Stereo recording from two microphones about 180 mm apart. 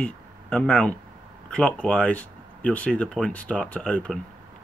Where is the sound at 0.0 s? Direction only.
10° left (ahead or behind).